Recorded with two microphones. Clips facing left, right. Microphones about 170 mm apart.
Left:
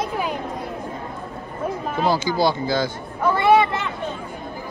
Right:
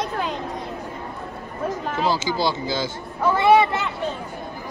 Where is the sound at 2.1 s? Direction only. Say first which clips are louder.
Left 3 dB; 50° left (ahead or behind).